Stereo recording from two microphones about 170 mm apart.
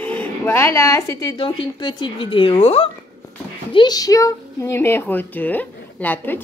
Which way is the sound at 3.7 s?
25° left (ahead or behind).